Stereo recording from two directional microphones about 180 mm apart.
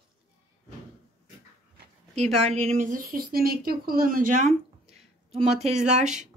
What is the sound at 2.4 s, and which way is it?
A woman's voice, 35° right (ahead or behind).